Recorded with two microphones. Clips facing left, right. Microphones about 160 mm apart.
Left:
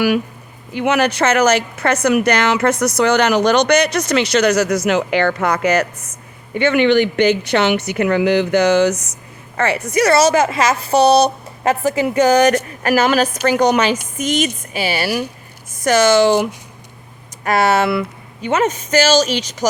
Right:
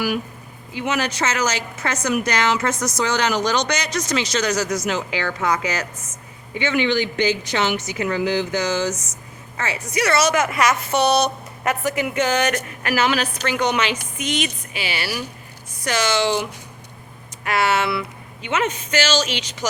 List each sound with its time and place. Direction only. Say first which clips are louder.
0.7 s a woman's voice: left 7 dB; 60° left (ahead or behind)
10.1 s a woman's voice: left 5 dB; 30° left (ahead or behind)